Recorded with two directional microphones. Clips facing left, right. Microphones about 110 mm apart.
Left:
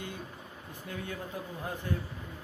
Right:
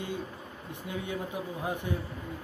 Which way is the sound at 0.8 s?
20° right (ahead or behind).